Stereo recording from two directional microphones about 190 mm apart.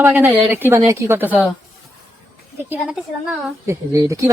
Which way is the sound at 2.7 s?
5° right (ahead or behind).